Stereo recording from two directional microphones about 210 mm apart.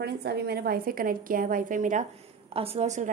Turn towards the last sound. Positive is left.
turn(degrees=-35)  # may be behind; listen again after turning